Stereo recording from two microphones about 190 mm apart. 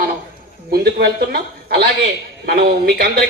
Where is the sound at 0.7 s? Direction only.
55° right (ahead or behind).